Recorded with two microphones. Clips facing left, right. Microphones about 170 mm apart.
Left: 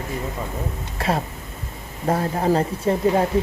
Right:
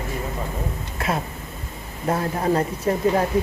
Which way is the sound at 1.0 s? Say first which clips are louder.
Left 2 dB; 35° left (ahead or behind).